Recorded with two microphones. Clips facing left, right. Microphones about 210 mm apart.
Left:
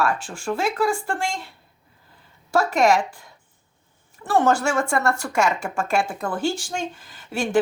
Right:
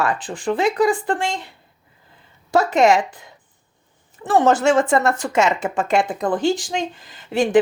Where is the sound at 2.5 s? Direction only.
20° right (ahead or behind).